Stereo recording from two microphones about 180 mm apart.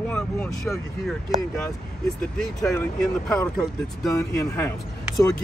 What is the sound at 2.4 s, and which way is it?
Speech, 5° left (ahead or behind).